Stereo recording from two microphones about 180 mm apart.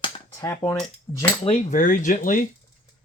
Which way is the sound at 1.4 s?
40° left (ahead or behind).